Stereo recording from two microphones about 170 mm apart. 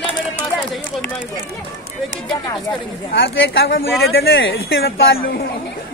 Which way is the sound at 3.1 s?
90° left.